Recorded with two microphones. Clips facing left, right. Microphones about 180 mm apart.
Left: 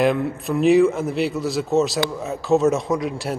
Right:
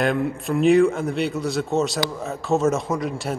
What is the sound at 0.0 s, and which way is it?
A man's voice, centre (ahead or behind).